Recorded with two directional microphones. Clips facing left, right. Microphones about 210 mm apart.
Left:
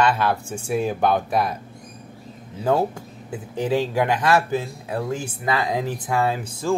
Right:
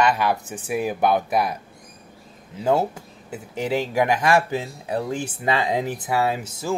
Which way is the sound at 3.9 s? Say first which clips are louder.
Right 1 dB; 15° right (ahead or behind).